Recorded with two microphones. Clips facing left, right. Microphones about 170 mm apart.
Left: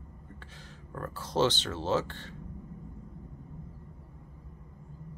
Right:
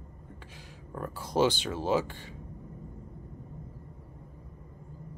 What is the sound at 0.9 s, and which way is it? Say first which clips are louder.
Speech: right 2 dB; 10° right (ahead or behind).